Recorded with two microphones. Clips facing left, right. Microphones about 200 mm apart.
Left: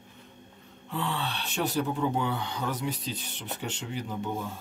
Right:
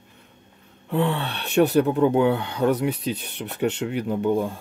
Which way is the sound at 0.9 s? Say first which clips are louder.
Right 9 dB; 60° right (ahead or behind).